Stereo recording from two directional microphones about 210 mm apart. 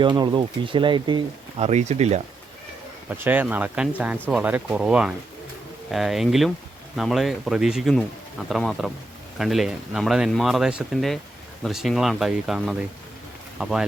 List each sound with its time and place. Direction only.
0.0 s speech: 20° right (ahead or behind)
3.1 s speech: 10° right (ahead or behind)